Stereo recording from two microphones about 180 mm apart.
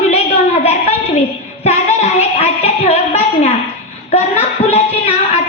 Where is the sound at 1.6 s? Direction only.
35° left (ahead or behind).